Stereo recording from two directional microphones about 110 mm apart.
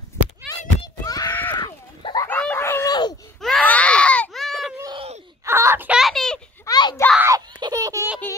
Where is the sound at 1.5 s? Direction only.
45° left (ahead or behind).